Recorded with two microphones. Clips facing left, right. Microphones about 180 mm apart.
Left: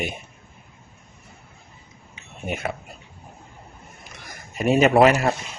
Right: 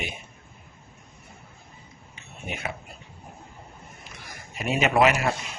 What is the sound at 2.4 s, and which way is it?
Speech, 50° left (ahead or behind).